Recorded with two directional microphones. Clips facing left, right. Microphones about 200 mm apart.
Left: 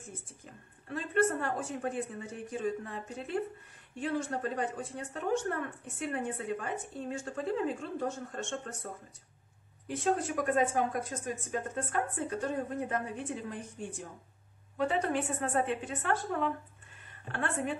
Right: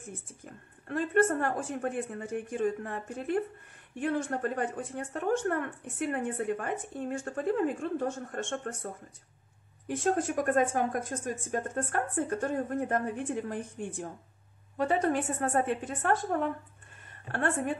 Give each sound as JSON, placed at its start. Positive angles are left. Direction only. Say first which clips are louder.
{"t": 0.8, "sound": "speech", "louder": "right 4 dB", "side_deg": -50}
{"t": 9.8, "sound": "a woman's voice", "louder": "right 2 dB", "side_deg": -50}